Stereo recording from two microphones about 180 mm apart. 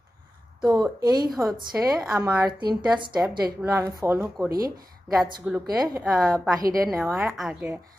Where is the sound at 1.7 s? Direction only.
10° right (ahead or behind).